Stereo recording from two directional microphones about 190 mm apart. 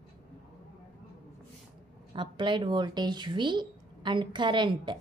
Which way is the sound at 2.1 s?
25° right (ahead or behind).